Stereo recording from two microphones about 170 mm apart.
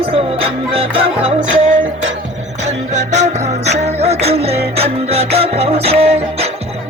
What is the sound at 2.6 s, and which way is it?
Music, 45° right (ahead or behind).